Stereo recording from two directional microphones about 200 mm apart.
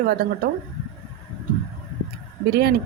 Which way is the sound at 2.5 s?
50° right (ahead or behind).